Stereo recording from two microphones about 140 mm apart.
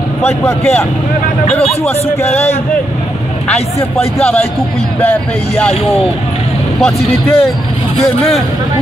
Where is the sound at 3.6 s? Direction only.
45° left (ahead or behind).